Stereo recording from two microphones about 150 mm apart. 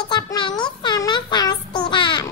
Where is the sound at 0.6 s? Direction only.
30° left (ahead or behind).